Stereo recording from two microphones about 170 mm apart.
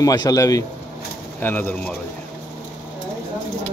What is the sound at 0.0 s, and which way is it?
A man's voice, 20° left (ahead or behind).